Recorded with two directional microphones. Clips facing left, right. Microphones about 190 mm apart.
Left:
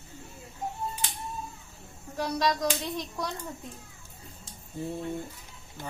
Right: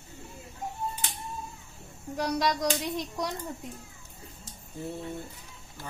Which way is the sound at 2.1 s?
15° right (ahead or behind).